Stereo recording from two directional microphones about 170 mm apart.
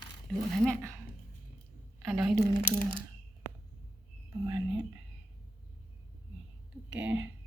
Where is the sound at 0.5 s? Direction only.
5° left (ahead or behind).